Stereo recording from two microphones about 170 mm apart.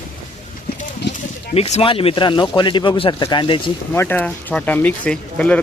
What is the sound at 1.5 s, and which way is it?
Speech, 35° left (ahead or behind).